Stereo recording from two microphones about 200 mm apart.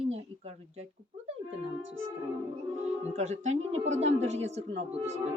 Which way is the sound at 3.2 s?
35° right (ahead or behind).